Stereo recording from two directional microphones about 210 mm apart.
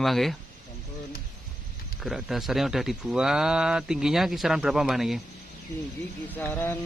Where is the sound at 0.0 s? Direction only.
Centre (ahead or behind).